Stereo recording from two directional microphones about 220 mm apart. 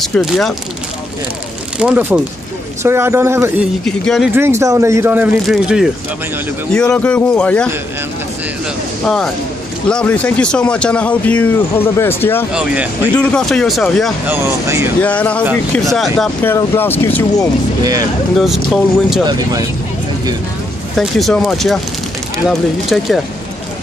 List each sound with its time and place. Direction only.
0.0 s a man's voice: centre (ahead or behind)
1.8 s a man's voice: 5° right (ahead or behind)
3.8 s a man's voice: centre (ahead or behind)
4.3 s a man's voice: 10° right (ahead or behind); by 7.7 s 5° left (ahead or behind)
9.0 s a man's voice: centre (ahead or behind)
12.5 s speech: 5° right (ahead or behind)
13.1 s a man's voice: 5° left (ahead or behind)
14.2 s speech: 10° right (ahead or behind)
15.0 s a man's voice: 5° left (ahead or behind)
18.7 s a man's voice: centre (ahead or behind)
19.2 s speech: 15° right (ahead or behind)
21.0 s a man's voice: centre (ahead or behind)